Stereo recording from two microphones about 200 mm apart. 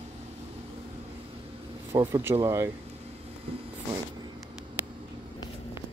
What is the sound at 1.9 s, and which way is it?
Speech, 15° right (ahead or behind).